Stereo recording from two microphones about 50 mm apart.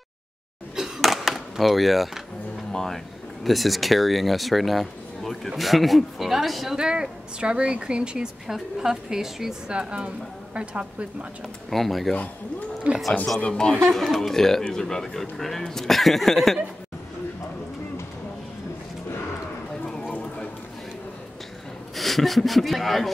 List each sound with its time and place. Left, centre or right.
0.7 s a sound: centre
1.0 s skateboard: centre
2.7 s speech: centre
6.8 s a woman's voice: centre
8.5 s a woman's voice: centre
9.7 s a woman's voice: centre
11.7 s speech: centre
12.9 s a woman's voice: right
13.5 s speech: centre
21.9 s speech: centre